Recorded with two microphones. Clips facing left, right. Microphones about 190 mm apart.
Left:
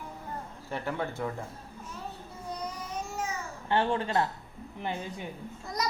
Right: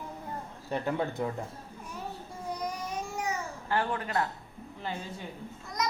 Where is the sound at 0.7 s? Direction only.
20° right (ahead or behind).